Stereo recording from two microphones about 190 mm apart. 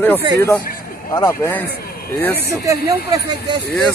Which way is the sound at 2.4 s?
15° right (ahead or behind).